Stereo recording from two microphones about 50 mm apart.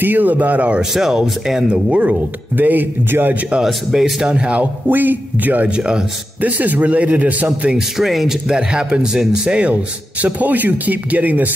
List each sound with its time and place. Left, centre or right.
0.0 s speech: right
0.7 s speech: centre
1.7 s speech: right
3.6 s speech: centre
4.8 s speech: right
5.8 s speech: centre
6.4 s speech: right
7.7 s speech: centre; by 9.8 s right
10.2 s speech: right